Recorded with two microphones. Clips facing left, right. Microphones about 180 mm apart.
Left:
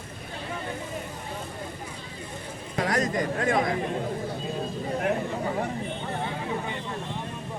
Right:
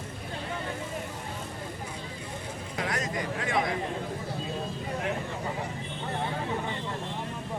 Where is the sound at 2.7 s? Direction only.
40° left (ahead or behind).